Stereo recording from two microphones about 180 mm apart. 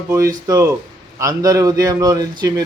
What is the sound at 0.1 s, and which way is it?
A man's voice, 20° right (ahead or behind).